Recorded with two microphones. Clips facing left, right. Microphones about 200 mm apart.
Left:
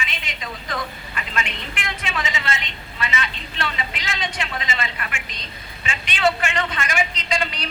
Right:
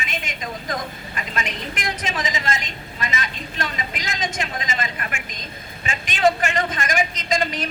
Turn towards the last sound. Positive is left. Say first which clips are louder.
# right 3 dB
turn(degrees=-45)  # may be behind; listen again after turning